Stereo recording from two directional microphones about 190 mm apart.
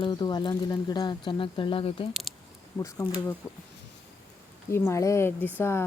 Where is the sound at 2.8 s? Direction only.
15° left (ahead or behind).